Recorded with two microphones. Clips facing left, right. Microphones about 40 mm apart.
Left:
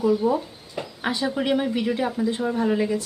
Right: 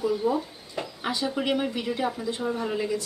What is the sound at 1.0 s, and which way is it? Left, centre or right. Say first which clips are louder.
Speech: left 4 dB; left.